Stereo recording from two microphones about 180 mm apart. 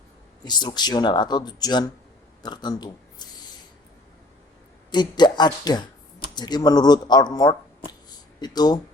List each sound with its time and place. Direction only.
0.4 s speech: 25° left (ahead or behind)
4.9 s speech: 25° left (ahead or behind)